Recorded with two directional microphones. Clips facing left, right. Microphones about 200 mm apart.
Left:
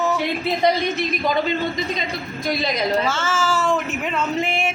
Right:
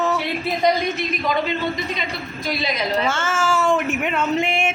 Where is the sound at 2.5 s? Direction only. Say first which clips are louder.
Left 2 dB; 45° left (ahead or behind).